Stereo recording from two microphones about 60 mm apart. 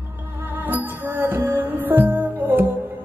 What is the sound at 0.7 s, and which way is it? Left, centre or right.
Music, right.